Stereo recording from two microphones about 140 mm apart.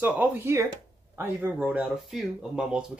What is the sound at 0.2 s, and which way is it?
Speech, 15° right (ahead or behind).